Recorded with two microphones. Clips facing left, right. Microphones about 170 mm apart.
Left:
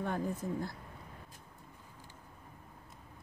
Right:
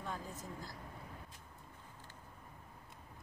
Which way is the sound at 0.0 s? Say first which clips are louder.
Left 9 dB; 60° left (ahead or behind).